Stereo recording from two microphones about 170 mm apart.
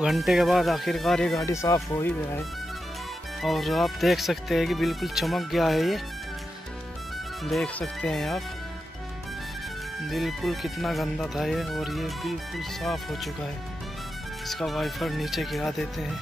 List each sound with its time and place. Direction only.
0.0 s speech: centre (ahead or behind)
1.4 s speech: 20° left (ahead or behind)
3.4 s speech: centre (ahead or behind)
7.4 s speech: centre (ahead or behind)
10.0 s speech: centre (ahead or behind)
14.5 s speech: centre (ahead or behind)